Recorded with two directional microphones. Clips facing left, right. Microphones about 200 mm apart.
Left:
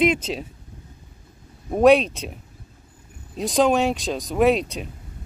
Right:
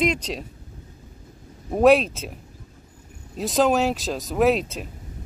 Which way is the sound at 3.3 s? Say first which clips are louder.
Left 1 dB; centre (ahead or behind).